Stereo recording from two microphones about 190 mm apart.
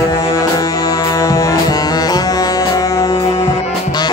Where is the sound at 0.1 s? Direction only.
20° left (ahead or behind).